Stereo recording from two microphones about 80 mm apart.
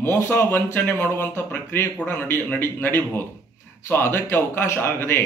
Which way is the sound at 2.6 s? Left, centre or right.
Left.